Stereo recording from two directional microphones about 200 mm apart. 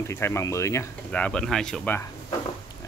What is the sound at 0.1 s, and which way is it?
Speech, 15° left (ahead or behind).